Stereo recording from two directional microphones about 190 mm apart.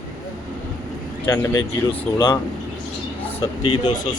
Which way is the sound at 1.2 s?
20° left (ahead or behind).